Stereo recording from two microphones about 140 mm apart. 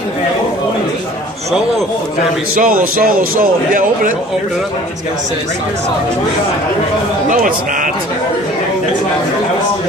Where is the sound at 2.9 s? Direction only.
90° right.